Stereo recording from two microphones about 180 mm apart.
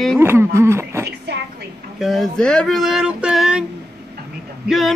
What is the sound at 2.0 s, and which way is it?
Speech, centre (ahead or behind).